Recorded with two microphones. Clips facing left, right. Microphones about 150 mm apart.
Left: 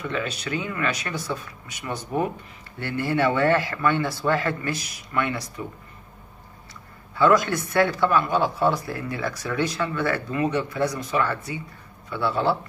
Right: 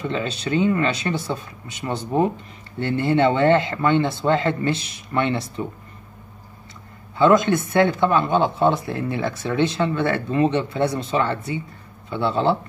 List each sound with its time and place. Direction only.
0.0 s speech: 25° right (ahead or behind)
7.2 s speech: 20° right (ahead or behind)